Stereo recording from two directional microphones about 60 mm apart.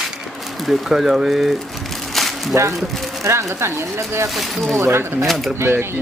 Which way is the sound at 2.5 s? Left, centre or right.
Right.